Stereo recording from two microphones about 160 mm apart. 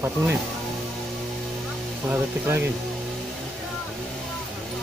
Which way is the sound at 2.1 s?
15° right (ahead or behind).